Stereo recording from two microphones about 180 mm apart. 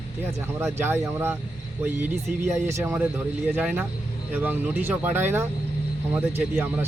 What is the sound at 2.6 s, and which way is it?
Speech, 10° right (ahead or behind).